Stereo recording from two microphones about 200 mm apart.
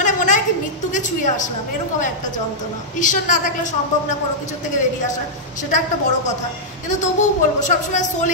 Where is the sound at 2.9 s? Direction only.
40° left (ahead or behind).